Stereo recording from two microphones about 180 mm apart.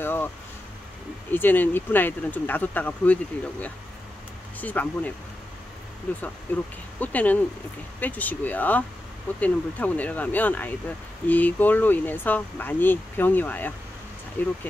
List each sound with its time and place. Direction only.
0.0 s a sound: 10° left (ahead or behind)
1.3 s speech: 10° left (ahead or behind)
4.6 s speech: 10° left (ahead or behind)